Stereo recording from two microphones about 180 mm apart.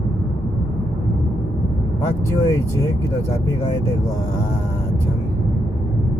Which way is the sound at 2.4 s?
15° left (ahead or behind).